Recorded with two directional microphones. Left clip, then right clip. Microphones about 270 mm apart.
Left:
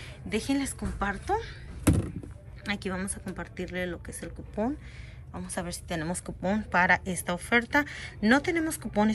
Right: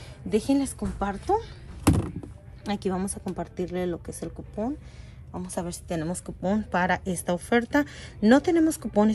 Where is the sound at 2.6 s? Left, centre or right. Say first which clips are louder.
Right 3 dB; centre.